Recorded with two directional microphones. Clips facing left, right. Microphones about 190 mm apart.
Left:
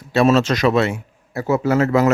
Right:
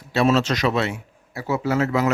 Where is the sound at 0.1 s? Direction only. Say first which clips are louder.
Left 4 dB; 50° left (ahead or behind).